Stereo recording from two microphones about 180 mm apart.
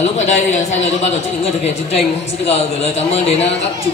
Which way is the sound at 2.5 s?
35° left (ahead or behind).